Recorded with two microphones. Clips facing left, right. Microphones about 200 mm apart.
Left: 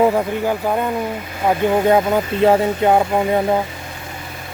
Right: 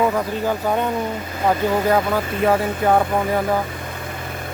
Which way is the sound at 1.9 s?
20° left (ahead or behind).